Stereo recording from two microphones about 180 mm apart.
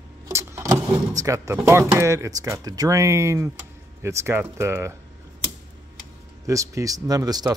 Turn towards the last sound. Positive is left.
turn(degrees=-20)  # may be behind; listen again after turning